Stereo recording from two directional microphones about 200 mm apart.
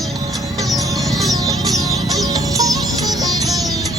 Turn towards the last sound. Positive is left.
turn(degrees=-20)  # may be behind; listen again after turning